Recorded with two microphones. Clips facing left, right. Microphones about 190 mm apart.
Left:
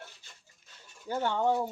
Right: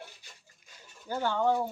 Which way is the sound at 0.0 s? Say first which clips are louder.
Right 2 dB; 10° right (ahead or behind).